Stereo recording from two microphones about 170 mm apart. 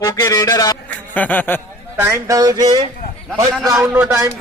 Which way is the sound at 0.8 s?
10° left (ahead or behind).